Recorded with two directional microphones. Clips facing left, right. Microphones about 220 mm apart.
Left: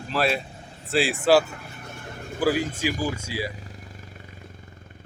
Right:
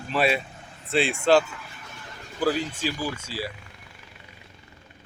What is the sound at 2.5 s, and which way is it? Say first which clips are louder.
Speech: left 3 dB; 50° left (ahead or behind).